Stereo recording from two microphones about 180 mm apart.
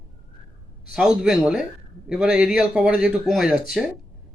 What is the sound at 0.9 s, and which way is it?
Speech, 5° right (ahead or behind).